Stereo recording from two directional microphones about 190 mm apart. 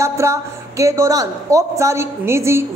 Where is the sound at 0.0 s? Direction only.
15° right (ahead or behind).